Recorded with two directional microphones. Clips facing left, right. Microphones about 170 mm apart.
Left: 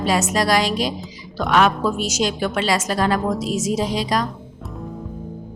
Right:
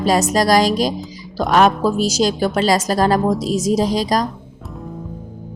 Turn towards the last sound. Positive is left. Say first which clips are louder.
# right 4 dB
turn(degrees=-40)  # may be behind; listen again after turning